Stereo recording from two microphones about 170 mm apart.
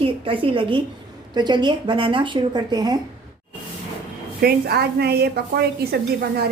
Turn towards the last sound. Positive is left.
turn(degrees=-70)  # may be behind; listen again after turning